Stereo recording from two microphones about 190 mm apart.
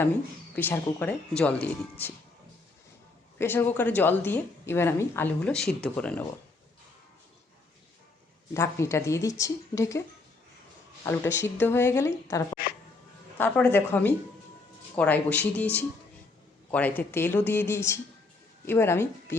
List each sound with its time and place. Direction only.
0.5 s a woman's voice: 10° left (ahead or behind)
3.3 s a woman's voice: 10° left (ahead or behind)
8.5 s a woman's voice: 15° left (ahead or behind)
11.0 s a woman's voice: 10° left (ahead or behind)
13.4 s a woman's voice: 10° left (ahead or behind)